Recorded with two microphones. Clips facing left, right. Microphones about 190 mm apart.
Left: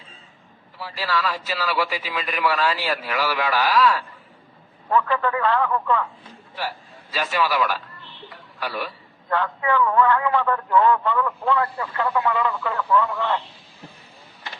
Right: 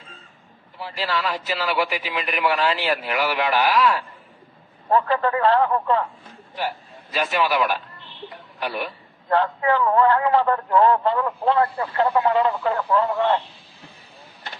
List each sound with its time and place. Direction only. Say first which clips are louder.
0.8 s a man's voice: even; 20° right (ahead or behind)
4.9 s a man's voice: right 2 dB; 35° right (ahead or behind)
6.6 s a man's voice: right 3 dB; 20° right (ahead or behind)
8.3 s a sound: right 2 dB; 20° right (ahead or behind)
9.3 s a man's voice: right 3 dB; 35° right (ahead or behind)